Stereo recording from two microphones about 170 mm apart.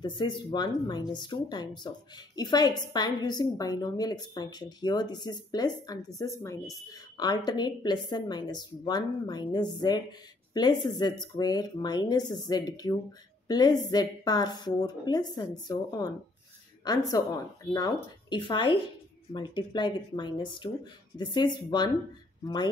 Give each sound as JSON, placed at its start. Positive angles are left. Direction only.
{"t": 0.0, "sound": "a woman's voice", "side_deg": 30}
{"t": 17.1, "sound": "speech", "side_deg": 20}